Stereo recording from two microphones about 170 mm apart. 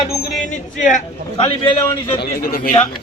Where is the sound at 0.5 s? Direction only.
45° left (ahead or behind).